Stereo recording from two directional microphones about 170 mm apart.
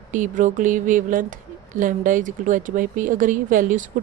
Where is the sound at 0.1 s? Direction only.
50° right (ahead or behind).